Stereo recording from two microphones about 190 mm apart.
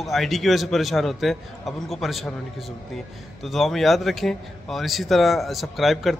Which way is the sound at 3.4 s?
Centre (ahead or behind).